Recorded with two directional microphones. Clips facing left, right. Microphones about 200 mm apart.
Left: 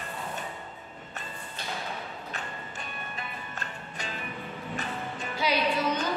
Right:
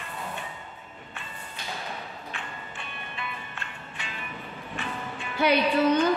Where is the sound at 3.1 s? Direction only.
40° left (ahead or behind).